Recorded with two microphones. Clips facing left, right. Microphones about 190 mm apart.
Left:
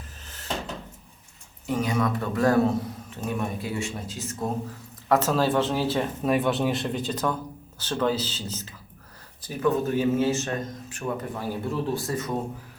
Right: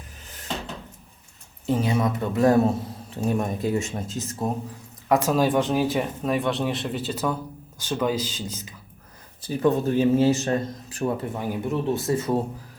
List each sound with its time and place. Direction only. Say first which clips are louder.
1.6 s a man's voice: right 2 dB; 25° right (ahead or behind)
3.2 s speech: right 5 dB; 40° right (ahead or behind)
5.0 s speech: right 2 dB; 10° right (ahead or behind)
6.2 s speech: left 3 dB; centre (ahead or behind)
9.4 s speech: right 3 dB; 35° right (ahead or behind)
11.3 s speech: right 2 dB; 20° right (ahead or behind)